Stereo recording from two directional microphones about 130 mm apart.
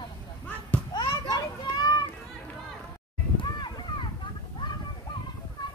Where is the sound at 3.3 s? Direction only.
35° left (ahead or behind).